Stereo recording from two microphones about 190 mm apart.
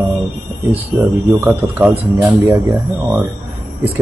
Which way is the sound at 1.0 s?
15° right (ahead or behind).